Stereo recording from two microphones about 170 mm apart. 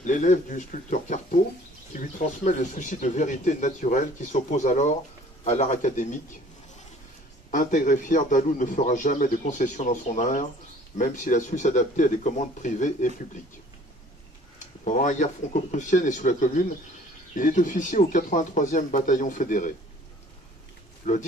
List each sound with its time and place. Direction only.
0.0 s speech: 45° left (ahead or behind)
7.5 s speech: 50° left (ahead or behind)
14.9 s speech: 45° left (ahead or behind)
21.0 s speech: 45° left (ahead or behind)